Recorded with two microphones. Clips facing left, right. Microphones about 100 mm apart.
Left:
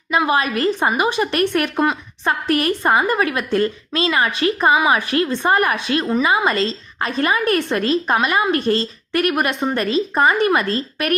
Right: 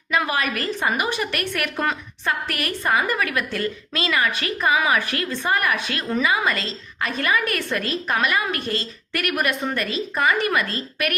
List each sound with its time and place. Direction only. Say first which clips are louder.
0.1 s a woman's voice: left 5 dB; 25° left (ahead or behind)